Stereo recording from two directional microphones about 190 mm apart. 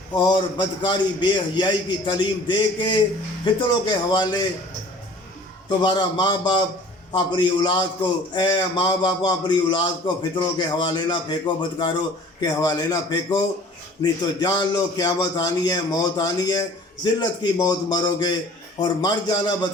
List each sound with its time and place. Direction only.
0.1 s a man's voice: 20° left (ahead or behind)
5.6 s a man's voice: 25° left (ahead or behind)